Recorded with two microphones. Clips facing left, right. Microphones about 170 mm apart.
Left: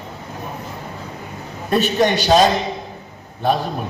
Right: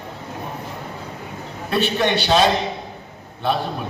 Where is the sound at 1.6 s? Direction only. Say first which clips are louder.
Left 3 dB; 45° left (ahead or behind).